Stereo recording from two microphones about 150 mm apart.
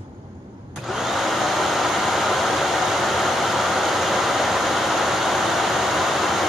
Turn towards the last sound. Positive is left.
turn(degrees=0)  # may be behind; listen again after turning